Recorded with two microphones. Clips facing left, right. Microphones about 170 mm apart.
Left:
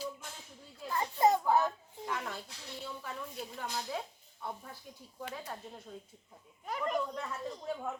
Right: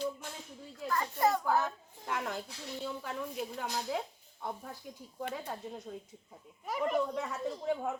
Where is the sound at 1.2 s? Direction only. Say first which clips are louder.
Left 3 dB; 20° left (ahead or behind).